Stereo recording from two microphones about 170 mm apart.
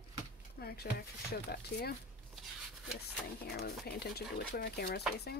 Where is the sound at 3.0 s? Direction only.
70° left (ahead or behind).